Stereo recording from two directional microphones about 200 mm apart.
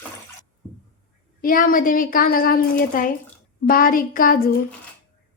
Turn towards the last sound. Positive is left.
turn(degrees=45)  # may be behind; listen again after turning